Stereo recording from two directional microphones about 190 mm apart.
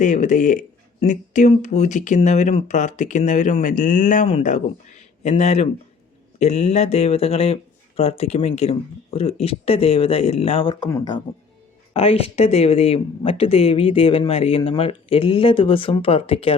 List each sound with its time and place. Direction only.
0.0 s speech: 40° left (ahead or behind); by 11.2 s 20° left (ahead or behind)
11.9 s speech: 30° left (ahead or behind)